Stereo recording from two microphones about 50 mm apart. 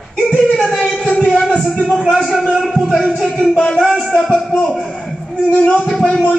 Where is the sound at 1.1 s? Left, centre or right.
Centre.